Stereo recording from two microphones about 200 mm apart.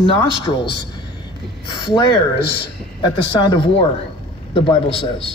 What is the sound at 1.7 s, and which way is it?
Speech, 25° left (ahead or behind).